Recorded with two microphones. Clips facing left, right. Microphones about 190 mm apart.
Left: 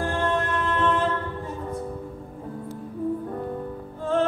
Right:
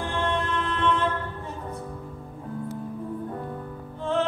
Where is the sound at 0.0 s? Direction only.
45° left (ahead or behind).